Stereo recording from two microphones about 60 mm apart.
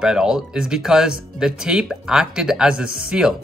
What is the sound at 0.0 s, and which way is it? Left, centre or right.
Speech, centre.